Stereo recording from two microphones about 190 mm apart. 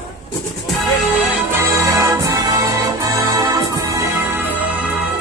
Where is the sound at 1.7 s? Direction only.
15° right (ahead or behind).